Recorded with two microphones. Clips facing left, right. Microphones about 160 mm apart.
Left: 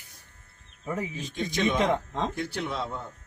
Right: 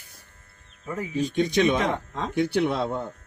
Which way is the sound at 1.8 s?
30° left (ahead or behind).